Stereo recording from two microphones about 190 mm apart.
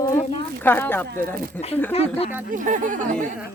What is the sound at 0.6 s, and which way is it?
Speech, 10° left (ahead or behind).